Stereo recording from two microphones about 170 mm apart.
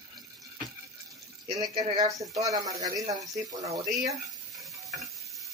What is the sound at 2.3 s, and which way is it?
Speech, 20° right (ahead or behind).